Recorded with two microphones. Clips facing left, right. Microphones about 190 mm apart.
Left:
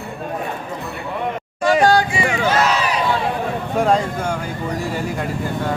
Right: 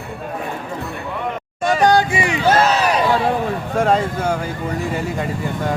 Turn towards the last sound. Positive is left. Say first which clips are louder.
# right 1 dB
turn(degrees=0)  # may be behind; listen again after turning